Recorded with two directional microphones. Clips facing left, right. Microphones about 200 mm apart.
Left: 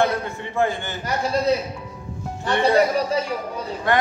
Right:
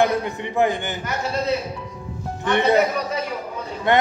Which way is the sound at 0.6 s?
15° right (ahead or behind).